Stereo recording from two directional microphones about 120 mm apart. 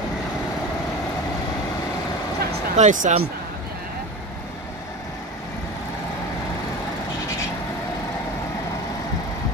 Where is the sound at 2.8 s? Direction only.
90° right.